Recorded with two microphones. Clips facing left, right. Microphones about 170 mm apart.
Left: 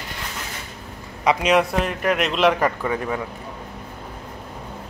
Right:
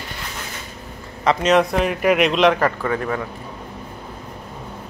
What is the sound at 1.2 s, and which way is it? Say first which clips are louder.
A man's voice: right 2 dB; 10° left (ahead or behind).